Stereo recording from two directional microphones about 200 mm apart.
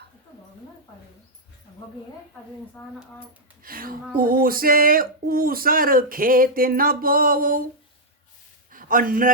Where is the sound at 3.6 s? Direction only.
45° right (ahead or behind).